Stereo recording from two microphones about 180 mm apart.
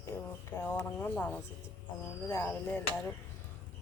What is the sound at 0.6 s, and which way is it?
Speech, 10° left (ahead or behind).